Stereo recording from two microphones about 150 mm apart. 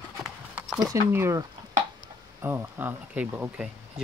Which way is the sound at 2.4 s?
15° right (ahead or behind).